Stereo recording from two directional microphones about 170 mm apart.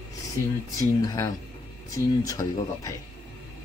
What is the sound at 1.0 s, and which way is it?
Speech, 20° left (ahead or behind).